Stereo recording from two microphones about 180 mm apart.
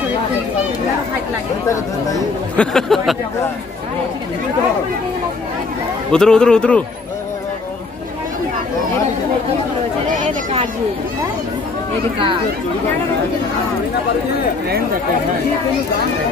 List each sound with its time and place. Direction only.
2.5 s speech: 5° left (ahead or behind)
6.1 s speech: 5° left (ahead or behind)